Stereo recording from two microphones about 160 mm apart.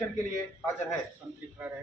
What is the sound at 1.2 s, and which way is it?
Speech, 5° right (ahead or behind).